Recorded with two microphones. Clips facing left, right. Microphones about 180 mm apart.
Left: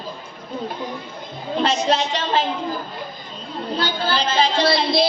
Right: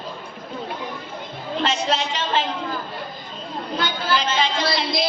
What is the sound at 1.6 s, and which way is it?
Child singing, 35° left (ahead or behind).